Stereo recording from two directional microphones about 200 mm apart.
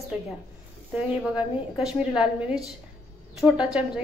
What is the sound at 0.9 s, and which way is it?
A woman's voice, 5° right (ahead or behind).